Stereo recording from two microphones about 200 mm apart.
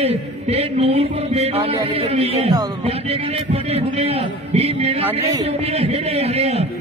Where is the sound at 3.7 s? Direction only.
30° right (ahead or behind).